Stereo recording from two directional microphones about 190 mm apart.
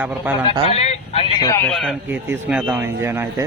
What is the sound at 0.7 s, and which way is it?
Speech, 35° left (ahead or behind).